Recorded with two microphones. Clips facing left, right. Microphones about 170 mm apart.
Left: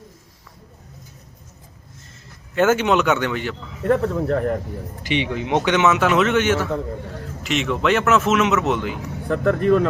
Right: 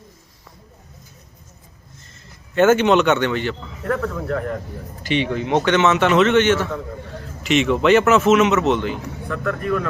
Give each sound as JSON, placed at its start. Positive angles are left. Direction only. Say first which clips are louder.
{"t": 2.6, "sound": "speech", "louder": "right 3 dB", "side_deg": 5}
{"t": 3.8, "sound": "speech", "louder": "left 4 dB", "side_deg": 30}
{"t": 5.0, "sound": "speech", "louder": "right 2 dB", "side_deg": 15}
{"t": 9.3, "sound": "speech", "louder": "left 6 dB", "side_deg": 30}